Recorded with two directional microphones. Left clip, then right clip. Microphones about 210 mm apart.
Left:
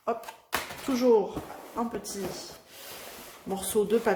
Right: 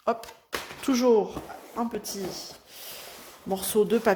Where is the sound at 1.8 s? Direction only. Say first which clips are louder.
Right 1 dB; 35° right (ahead or behind).